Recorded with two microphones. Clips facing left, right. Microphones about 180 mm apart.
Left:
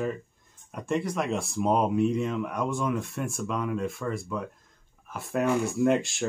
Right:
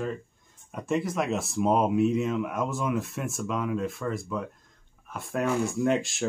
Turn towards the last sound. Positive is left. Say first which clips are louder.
# left 2 dB
turn(degrees=0)  # may be behind; listen again after turning